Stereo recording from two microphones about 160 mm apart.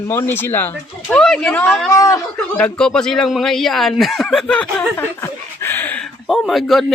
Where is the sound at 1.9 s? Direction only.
20° left (ahead or behind).